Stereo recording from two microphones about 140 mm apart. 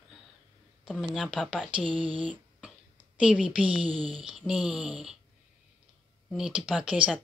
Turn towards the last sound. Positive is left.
turn(degrees=-10)  # may be behind; listen again after turning